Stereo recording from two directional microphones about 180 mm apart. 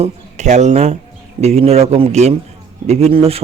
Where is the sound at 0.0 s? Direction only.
40° right (ahead or behind).